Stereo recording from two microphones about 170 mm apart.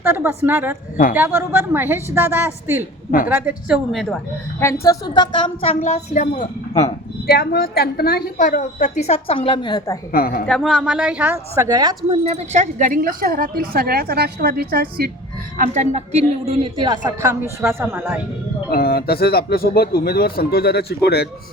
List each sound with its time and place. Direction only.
0.0 s a woman's voice: 10° right (ahead or behind)
4.6 s a woman's voice: 20° left (ahead or behind)
5.8 s a woman's voice: 45° left (ahead or behind)
7.3 s a woman's voice: 60° left (ahead or behind); by 10.0 s 25° left (ahead or behind)
10.1 s speech: 60° left (ahead or behind)
10.4 s a woman's voice: centre (ahead or behind); by 11.9 s 20° right (ahead or behind)
12.2 s a woman's voice: 40° right (ahead or behind); by 15.1 s 60° right (ahead or behind)
15.5 s a woman's voice: 50° right (ahead or behind)
16.7 s a woman's voice: 25° right (ahead or behind)
18.7 s speech: 65° left (ahead or behind)